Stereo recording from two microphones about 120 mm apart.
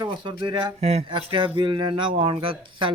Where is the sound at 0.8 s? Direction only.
65° right (ahead or behind).